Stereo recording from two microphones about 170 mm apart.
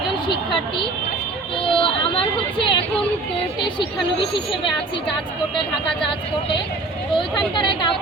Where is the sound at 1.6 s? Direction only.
30° left (ahead or behind).